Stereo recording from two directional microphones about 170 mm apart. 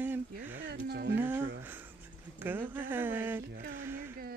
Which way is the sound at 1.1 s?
15° right (ahead or behind).